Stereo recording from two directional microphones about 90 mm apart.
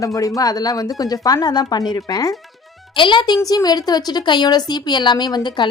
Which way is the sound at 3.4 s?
45° left (ahead or behind).